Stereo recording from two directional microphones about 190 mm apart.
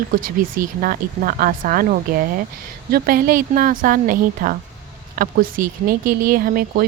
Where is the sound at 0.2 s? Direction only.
45° right (ahead or behind).